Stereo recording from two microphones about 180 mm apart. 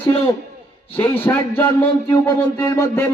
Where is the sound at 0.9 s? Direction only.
10° left (ahead or behind).